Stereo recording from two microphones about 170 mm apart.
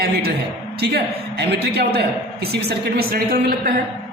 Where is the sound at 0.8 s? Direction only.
75° right (ahead or behind).